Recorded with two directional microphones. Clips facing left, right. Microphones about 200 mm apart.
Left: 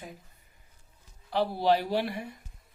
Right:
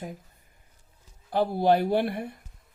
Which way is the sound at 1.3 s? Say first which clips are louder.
Right 3 dB; 50° right (ahead or behind).